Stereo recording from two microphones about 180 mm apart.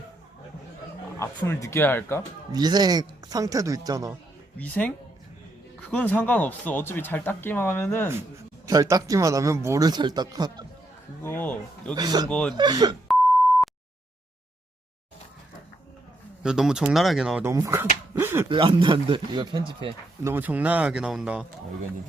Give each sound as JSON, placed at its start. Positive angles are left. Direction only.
{"t": 1.2, "sound": "speech", "side_deg": 15}
{"t": 2.5, "sound": "speech", "side_deg": -20}
{"t": 4.5, "sound": "speech", "side_deg": 10}
{"t": 5.9, "sound": "speech", "side_deg": 10}
{"t": 8.6, "sound": "speech", "side_deg": -20}
{"t": 11.2, "sound": "speech", "side_deg": 10}
{"t": 11.9, "sound": "speech", "side_deg": -20}
{"t": 12.3, "sound": "speech", "side_deg": 5}
{"t": 12.5, "sound": "speech", "side_deg": -25}
{"t": 16.4, "sound": "speech", "side_deg": -5}
{"t": 17.4, "sound": "speech", "side_deg": -15}
{"t": 18.1, "sound": "a sound", "side_deg": -15}
{"t": 18.4, "sound": "speech", "side_deg": -25}
{"t": 20.2, "sound": "speech", "side_deg": -10}